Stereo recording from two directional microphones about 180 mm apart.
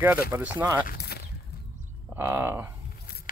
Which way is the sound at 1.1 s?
60° left (ahead or behind).